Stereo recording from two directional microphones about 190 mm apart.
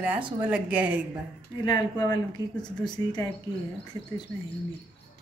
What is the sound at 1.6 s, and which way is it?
A woman's voice, 20° left (ahead or behind).